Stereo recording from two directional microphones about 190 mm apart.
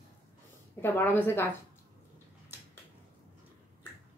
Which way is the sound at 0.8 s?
10° left (ahead or behind).